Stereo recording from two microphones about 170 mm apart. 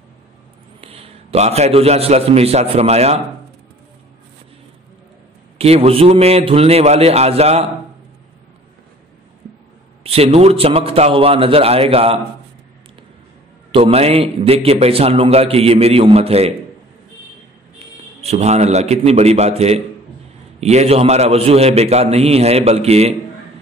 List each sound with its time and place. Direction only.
0.7 s a man's voice: 35° right (ahead or behind)
5.6 s a man's voice: 35° right (ahead or behind)
10.0 s a man's voice: 35° right (ahead or behind)
13.7 s a man's voice: 35° right (ahead or behind)
17.7 s a man's voice: 40° right (ahead or behind)